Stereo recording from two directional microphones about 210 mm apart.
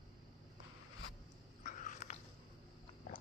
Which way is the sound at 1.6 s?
35° left (ahead or behind).